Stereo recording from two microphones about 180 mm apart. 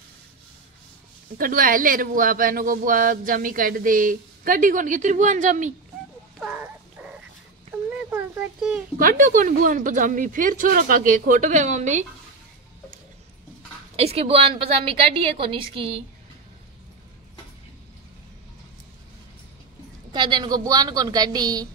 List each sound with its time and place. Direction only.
1.4 s speech: 50° right (ahead or behind)
6.4 s a sound: 5° right (ahead or behind)
8.1 s a sound: 5° right (ahead or behind)
8.9 s speech: 50° right (ahead or behind)
13.9 s a woman's voice: 35° right (ahead or behind)
20.1 s a woman's voice: 25° right (ahead or behind)